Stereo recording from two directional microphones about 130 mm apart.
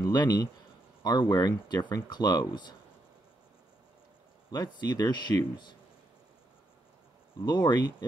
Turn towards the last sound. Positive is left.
turn(degrees=35)  # may be behind; listen again after turning